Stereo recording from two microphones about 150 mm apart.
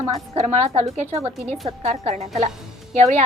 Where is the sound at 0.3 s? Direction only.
45° right (ahead or behind).